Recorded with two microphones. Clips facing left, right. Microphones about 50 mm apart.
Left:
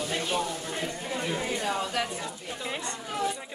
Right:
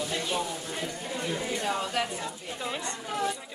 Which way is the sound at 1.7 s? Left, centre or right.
Centre.